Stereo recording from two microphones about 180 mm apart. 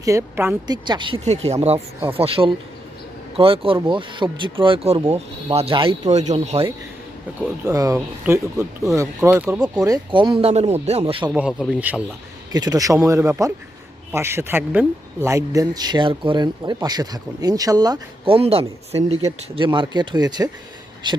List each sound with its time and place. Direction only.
0.0 s speech: 15° right (ahead or behind)
0.9 s speech: 25° right (ahead or behind)
2.1 s speech: 30° right (ahead or behind)
7.6 s speech: 20° right (ahead or behind)
9.8 s speech: 25° right (ahead or behind)
11.3 s speech: 5° right (ahead or behind)
12.5 s speech: 20° right (ahead or behind)